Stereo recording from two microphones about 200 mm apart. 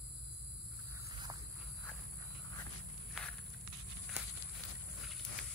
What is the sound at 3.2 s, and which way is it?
Walk, 5° right (ahead or behind).